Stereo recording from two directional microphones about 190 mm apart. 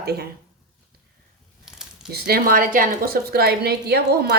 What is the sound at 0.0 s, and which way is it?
Speech, 55° right (ahead or behind).